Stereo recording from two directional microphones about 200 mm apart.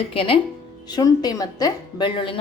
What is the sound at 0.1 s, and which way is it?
Speech, 25° left (ahead or behind).